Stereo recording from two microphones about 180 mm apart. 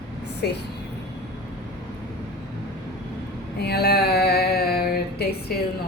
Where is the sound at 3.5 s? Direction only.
65° left (ahead or behind).